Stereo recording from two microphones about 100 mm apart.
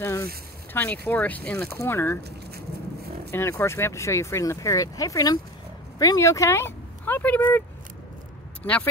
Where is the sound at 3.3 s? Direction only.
25° left (ahead or behind).